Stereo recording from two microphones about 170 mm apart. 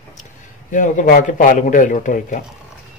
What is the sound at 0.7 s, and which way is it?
Speech, 50° left (ahead or behind).